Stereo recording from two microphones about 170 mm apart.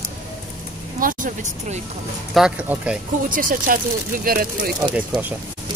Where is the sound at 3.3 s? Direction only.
55° right (ahead or behind).